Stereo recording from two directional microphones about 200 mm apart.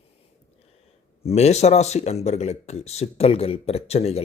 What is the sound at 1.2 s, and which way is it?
Speech, 30° left (ahead or behind).